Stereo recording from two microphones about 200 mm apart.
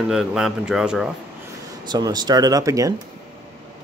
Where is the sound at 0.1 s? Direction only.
Centre (ahead or behind).